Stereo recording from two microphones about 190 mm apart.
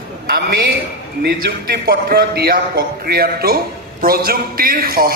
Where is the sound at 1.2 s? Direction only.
55° right (ahead or behind).